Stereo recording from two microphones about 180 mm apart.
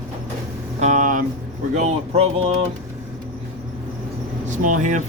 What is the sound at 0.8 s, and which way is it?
Speech, 45° right (ahead or behind).